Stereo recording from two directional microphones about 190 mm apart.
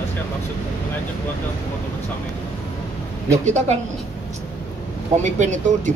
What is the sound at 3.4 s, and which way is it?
Speech, 40° right (ahead or behind).